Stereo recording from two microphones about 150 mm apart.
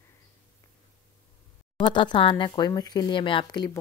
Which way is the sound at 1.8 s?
35° left (ahead or behind).